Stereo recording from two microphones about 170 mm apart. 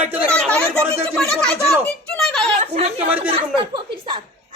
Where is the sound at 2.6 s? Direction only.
40° right (ahead or behind).